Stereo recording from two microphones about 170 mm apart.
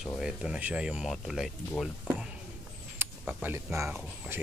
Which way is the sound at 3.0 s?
15° right (ahead or behind).